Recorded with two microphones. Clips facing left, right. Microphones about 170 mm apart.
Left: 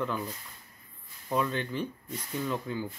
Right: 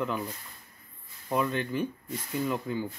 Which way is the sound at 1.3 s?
5° right (ahead or behind).